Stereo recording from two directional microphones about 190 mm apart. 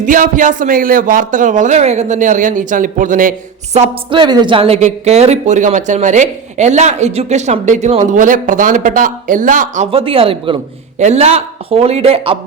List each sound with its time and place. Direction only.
0.0 s speech: 45° right (ahead or behind)